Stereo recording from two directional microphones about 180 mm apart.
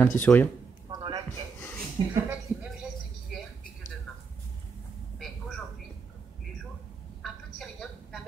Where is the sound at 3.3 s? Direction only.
Centre (ahead or behind).